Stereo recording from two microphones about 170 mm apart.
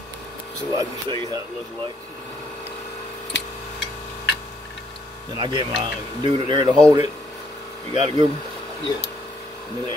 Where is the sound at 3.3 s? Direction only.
90° left.